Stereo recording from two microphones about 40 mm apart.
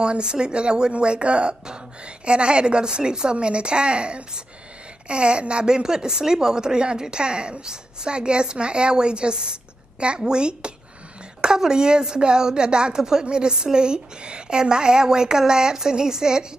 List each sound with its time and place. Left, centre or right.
0.0 s a woman's voice: right